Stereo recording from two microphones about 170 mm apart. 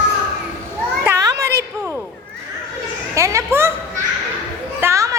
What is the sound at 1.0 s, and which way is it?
Children playing, 20° right (ahead or behind).